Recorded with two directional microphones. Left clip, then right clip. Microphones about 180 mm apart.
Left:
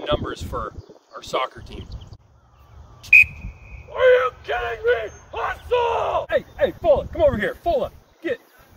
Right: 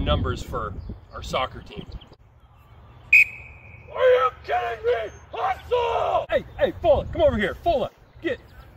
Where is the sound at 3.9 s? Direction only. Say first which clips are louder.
Left 2 dB; 25° left (ahead or behind).